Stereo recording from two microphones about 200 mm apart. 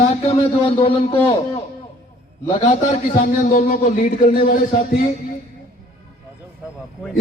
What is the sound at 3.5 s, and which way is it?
A man's voice, 40° left (ahead or behind).